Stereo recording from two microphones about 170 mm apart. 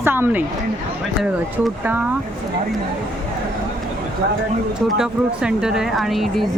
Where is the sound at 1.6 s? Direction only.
10° right (ahead or behind).